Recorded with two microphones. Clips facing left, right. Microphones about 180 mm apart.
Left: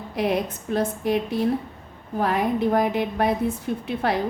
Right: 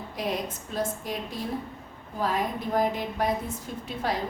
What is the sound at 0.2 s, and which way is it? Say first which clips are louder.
A woman's voice: left 7 dB; 65° left (ahead or behind).